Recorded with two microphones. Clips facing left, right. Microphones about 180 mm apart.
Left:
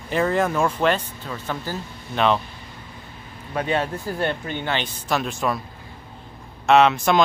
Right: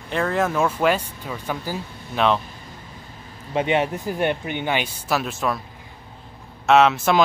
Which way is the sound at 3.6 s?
20° right (ahead or behind).